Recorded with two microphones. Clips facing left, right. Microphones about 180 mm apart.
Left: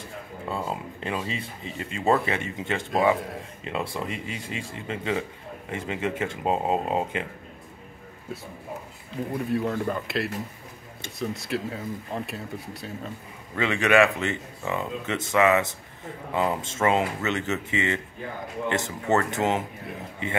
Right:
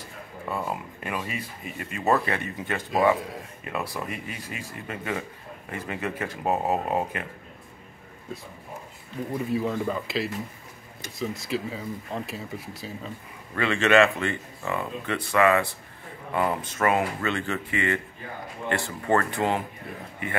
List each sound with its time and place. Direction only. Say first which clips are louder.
0.5 s speech: even; 25° left (ahead or behind)
9.5 s speech: even; centre (ahead or behind)
13.6 s speech: even; 15° left (ahead or behind)